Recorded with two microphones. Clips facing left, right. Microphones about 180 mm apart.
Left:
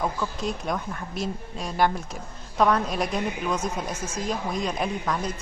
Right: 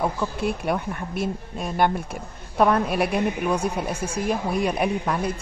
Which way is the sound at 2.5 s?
10° right (ahead or behind).